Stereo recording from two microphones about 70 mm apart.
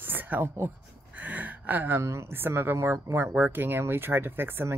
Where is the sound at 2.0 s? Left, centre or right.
Right.